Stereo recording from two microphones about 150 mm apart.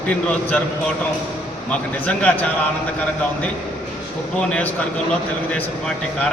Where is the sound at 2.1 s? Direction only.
10° left (ahead or behind).